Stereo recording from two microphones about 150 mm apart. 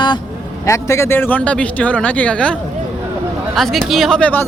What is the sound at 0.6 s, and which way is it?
Speech, 20° left (ahead or behind).